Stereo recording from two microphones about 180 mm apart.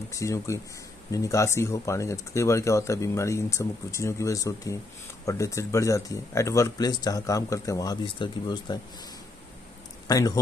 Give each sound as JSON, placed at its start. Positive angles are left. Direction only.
{"t": 0.1, "sound": "speech", "side_deg": 15}
{"t": 10.0, "sound": "speech", "side_deg": 20}